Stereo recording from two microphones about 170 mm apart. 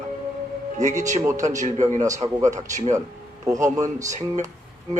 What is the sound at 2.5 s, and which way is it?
Speech, 45° right (ahead or behind).